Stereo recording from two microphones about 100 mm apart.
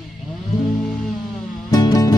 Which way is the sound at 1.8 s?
40° left (ahead or behind).